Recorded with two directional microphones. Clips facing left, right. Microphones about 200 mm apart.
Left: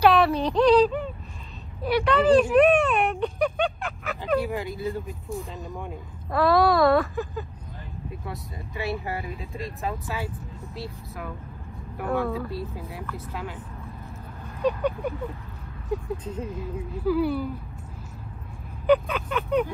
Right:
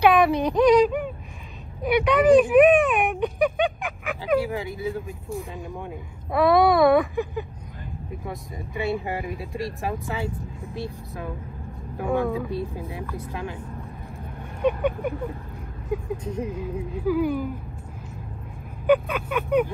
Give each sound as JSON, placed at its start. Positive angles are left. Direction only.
{"t": 0.0, "sound": "a sound", "side_deg": -10}
{"t": 1.8, "sound": "speech", "side_deg": -15}
{"t": 4.5, "sound": "speech", "side_deg": 0}
{"t": 5.4, "sound": "speech", "side_deg": -15}
{"t": 8.7, "sound": "speech", "side_deg": -15}
{"t": 14.7, "sound": "speech", "side_deg": -10}
{"t": 18.9, "sound": "speech", "side_deg": -10}